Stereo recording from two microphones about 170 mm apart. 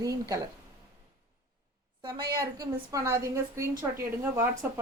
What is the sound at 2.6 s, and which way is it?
A woman's voice, 20° right (ahead or behind).